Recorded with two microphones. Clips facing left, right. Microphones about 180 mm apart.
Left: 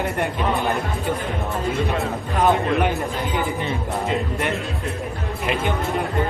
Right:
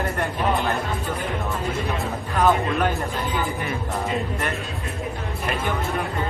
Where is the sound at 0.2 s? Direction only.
15° left (ahead or behind).